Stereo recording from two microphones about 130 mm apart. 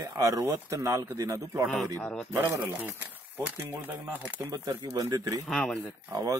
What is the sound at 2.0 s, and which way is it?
Speech, 15° left (ahead or behind).